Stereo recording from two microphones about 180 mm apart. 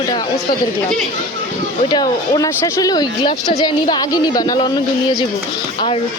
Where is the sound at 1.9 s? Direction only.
25° left (ahead or behind).